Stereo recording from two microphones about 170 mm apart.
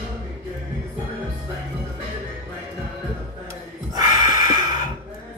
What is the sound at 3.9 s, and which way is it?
Gasp, 25° right (ahead or behind).